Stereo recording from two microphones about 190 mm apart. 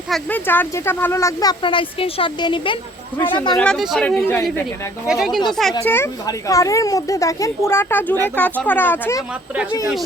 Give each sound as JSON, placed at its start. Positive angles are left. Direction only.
{"t": 0.1, "sound": "speech", "side_deg": 10}
{"t": 3.6, "sound": "speech", "side_deg": 0}
{"t": 5.0, "sound": "speech", "side_deg": 0}
{"t": 5.8, "sound": "speech", "side_deg": 10}